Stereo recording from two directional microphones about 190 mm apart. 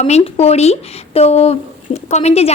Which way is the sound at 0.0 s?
35° left (ahead or behind).